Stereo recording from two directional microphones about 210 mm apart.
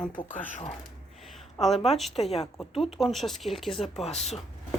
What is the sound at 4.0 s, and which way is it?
Speech, 30° left (ahead or behind).